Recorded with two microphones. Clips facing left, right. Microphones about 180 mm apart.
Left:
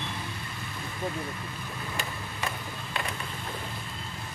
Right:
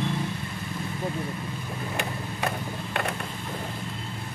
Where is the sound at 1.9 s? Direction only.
60° right (ahead or behind).